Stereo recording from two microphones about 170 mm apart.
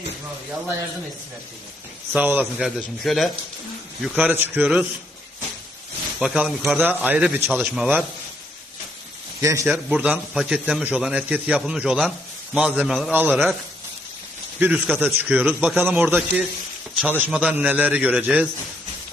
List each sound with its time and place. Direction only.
2.1 s a man's voice: 10° right (ahead or behind)
6.1 s a man's voice: 5° right (ahead or behind)
9.4 s a man's voice: 15° right (ahead or behind)
9.7 s a man's voice: 5° right (ahead or behind)
14.6 s a man's voice: 10° right (ahead or behind)